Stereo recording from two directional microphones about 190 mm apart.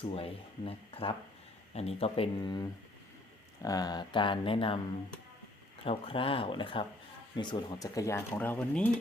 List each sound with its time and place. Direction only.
0.0 s speech: 30° left (ahead or behind)
5.8 s speech: 30° left (ahead or behind); by 8.9 s 10° left (ahead or behind)